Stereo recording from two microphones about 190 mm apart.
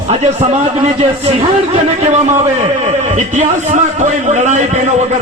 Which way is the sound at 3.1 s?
40° right (ahead or behind).